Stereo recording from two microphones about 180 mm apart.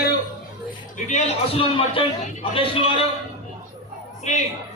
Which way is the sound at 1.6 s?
30° left (ahead or behind).